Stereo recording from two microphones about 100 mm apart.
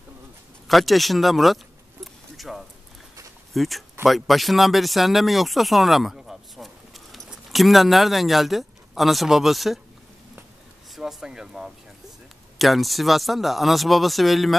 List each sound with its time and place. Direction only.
0.7 s speech: centre (ahead or behind)
2.3 s a sound: centre (ahead or behind)
3.5 s speech: centre (ahead or behind)
11.0 s speech: 5° right (ahead or behind)